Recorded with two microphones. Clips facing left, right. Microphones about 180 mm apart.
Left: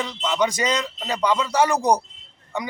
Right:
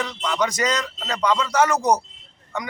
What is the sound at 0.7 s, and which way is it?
Speech, 10° left (ahead or behind).